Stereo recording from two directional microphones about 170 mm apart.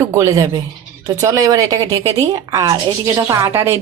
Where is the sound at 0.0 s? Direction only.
15° right (ahead or behind).